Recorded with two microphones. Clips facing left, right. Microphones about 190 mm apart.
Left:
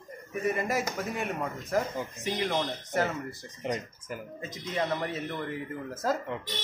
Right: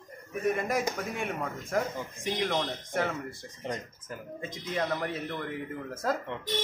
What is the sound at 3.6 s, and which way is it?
Speech, 15° left (ahead or behind).